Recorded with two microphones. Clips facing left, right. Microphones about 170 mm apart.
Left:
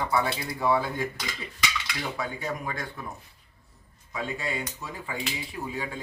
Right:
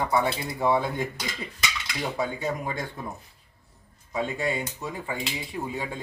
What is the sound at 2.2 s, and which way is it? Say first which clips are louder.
Speech: right 6 dB; 25° right (ahead or behind).